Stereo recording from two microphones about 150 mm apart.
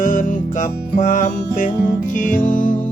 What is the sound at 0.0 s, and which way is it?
Music, 60° left (ahead or behind).